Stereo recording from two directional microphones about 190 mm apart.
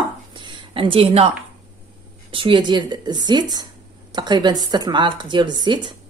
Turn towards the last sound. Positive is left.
turn(degrees=-25)  # may be behind; listen again after turning